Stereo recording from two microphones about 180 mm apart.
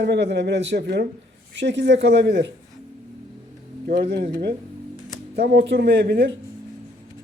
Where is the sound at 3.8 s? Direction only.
65° right (ahead or behind).